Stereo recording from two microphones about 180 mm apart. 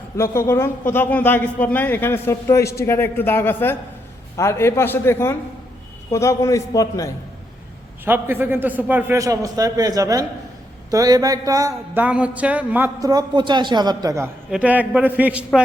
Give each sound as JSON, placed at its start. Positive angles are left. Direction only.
{"t": 0.2, "sound": "a man's voice", "side_deg": 15}
{"t": 8.0, "sound": "a man's voice", "side_deg": -10}
{"t": 12.0, "sound": "a man's voice", "side_deg": -5}
{"t": 14.5, "sound": "a man's voice", "side_deg": -10}